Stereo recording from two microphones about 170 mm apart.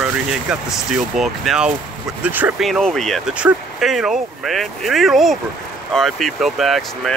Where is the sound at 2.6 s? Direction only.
Centre (ahead or behind).